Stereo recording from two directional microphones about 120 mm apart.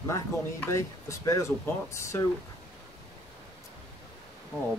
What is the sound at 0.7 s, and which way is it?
Speech, 25° left (ahead or behind).